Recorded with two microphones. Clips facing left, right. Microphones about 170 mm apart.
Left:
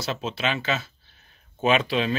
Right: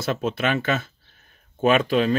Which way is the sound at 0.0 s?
50° right (ahead or behind).